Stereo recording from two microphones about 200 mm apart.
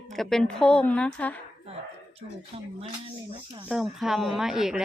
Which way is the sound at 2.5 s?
30° right (ahead or behind).